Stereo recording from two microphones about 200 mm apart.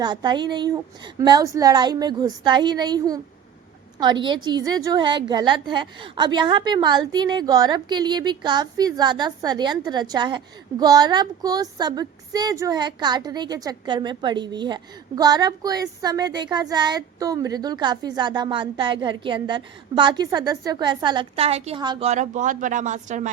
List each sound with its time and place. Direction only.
0.0 s a woman's voice: 20° right (ahead or behind); by 23.3 s 35° right (ahead or behind)